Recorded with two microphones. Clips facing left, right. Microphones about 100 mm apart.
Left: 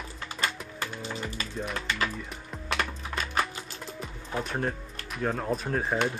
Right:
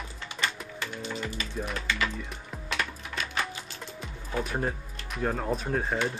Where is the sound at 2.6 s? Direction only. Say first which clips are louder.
Left 2 dB; 40° left (ahead or behind).